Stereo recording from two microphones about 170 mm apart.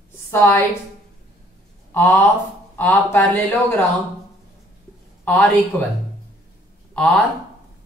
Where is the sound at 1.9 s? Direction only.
15° left (ahead or behind).